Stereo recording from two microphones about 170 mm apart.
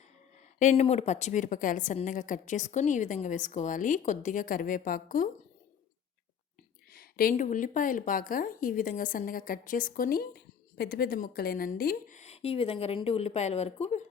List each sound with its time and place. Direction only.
0.3 s a woman's voice: 45° left (ahead or behind)
6.9 s a woman's voice: 60° left (ahead or behind); by 14.0 s 40° left (ahead or behind)